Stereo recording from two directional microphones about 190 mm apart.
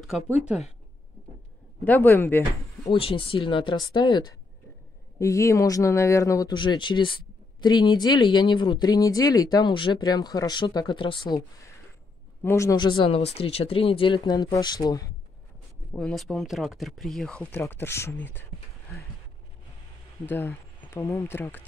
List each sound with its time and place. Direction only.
0.1 s speech: centre (ahead or behind)
1.9 s speech: 10° left (ahead or behind)
2.9 s speech: 30° left (ahead or behind)
15.9 s speech: 5° left (ahead or behind)
20.2 s speech: 10° left (ahead or behind)